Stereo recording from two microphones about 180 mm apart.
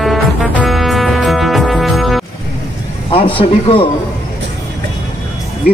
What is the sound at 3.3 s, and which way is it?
Speech, 30° left (ahead or behind).